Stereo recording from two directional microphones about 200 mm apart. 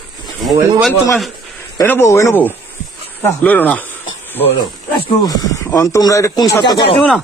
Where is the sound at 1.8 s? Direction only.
15° left (ahead or behind).